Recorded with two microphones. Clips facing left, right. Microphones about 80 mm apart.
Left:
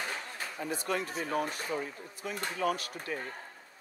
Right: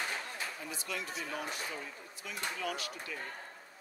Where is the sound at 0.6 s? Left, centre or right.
Left.